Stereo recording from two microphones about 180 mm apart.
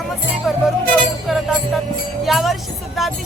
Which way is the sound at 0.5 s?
Centre (ahead or behind).